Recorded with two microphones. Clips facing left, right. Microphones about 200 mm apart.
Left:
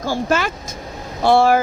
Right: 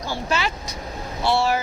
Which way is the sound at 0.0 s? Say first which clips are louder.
Left 6 dB; 50° left (ahead or behind).